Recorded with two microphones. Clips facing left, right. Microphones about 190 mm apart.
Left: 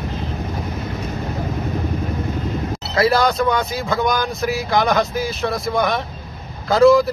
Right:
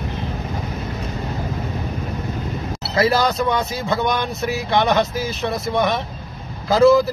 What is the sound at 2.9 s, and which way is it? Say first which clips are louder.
Speech: left 1 dB; centre (ahead or behind).